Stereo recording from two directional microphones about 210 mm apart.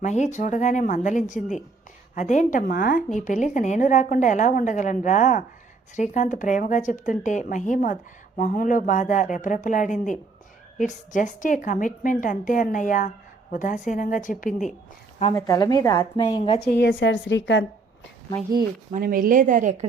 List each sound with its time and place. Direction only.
0.0 s a woman's voice: 35° left (ahead or behind)
15.4 s a woman's voice: 15° left (ahead or behind)
16.6 s a woman's voice: 50° left (ahead or behind)
18.9 s a woman's voice: 40° right (ahead or behind)